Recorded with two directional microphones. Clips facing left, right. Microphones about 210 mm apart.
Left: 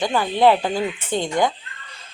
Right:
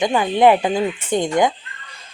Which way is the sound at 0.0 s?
15° right (ahead or behind).